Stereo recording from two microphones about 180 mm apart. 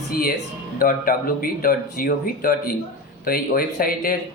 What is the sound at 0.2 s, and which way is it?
Speech, 55° left (ahead or behind).